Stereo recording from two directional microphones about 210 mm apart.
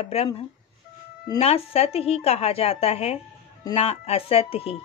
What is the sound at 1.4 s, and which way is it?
A woman's voice, 30° left (ahead or behind).